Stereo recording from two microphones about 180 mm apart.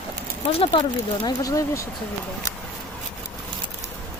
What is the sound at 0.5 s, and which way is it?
Speech, 30° left (ahead or behind).